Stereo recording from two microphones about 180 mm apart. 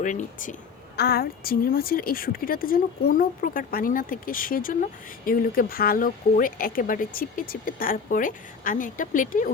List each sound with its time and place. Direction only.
0.0 s speech: 45° left (ahead or behind)
0.9 s speech: 60° left (ahead or behind); by 9.5 s 45° left (ahead or behind)